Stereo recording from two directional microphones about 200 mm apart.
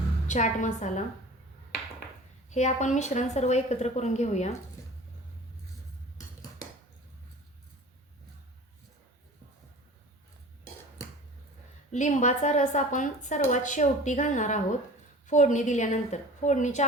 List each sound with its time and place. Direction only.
0.3 s a woman's voice: 40° left (ahead or behind)
2.5 s a woman's voice: 35° left (ahead or behind)
11.9 s a woman's voice: 40° left (ahead or behind)